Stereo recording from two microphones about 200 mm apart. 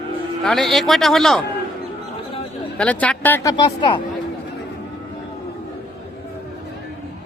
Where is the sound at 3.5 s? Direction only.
20° left (ahead or behind).